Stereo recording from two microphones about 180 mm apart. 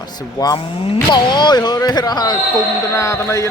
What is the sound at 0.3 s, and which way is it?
Speech, 20° left (ahead or behind).